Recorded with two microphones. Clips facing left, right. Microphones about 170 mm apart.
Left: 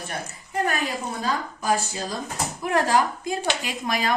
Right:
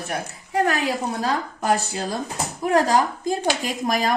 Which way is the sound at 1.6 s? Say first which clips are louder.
Right 3 dB; 65° right (ahead or behind).